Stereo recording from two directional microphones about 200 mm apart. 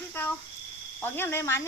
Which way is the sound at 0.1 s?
10° left (ahead or behind).